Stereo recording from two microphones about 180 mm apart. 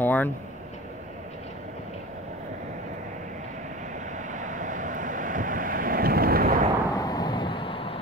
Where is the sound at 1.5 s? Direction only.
40° right (ahead or behind).